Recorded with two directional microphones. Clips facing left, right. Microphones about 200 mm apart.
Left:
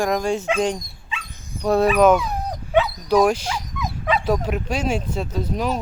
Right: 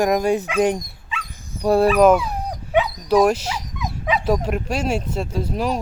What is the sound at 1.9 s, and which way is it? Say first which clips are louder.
Dog: even; centre (ahead or behind).